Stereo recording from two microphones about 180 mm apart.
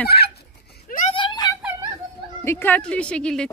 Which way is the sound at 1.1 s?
25° left (ahead or behind).